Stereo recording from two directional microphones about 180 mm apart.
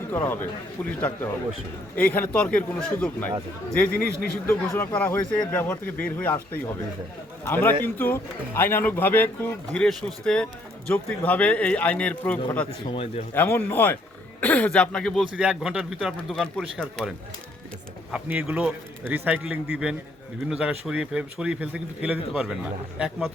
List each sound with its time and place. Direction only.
0.1 s a man's voice: 10° left (ahead or behind)
12.9 s speech: 30° left (ahead or behind)
13.3 s a man's voice: 10° left (ahead or behind); by 23.3 s 5° right (ahead or behind)